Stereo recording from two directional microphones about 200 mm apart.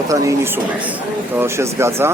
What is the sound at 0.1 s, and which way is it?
Speech, 15° right (ahead or behind).